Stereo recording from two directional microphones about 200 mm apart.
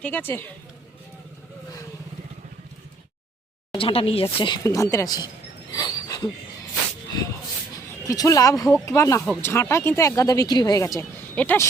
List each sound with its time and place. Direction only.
0.0 s speech: 10° left (ahead or behind)
3.7 s speech: 25° left (ahead or behind)
5.7 s a sound: 20° left (ahead or behind)
8.0 s speech: 15° left (ahead or behind)